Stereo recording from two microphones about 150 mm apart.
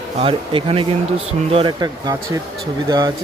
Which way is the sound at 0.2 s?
35° right (ahead or behind).